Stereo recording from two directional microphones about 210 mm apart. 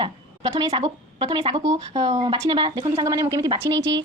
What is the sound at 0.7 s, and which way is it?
A woman's voice, 20° right (ahead or behind).